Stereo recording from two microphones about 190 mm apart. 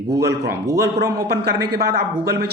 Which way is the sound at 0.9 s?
60° right (ahead or behind).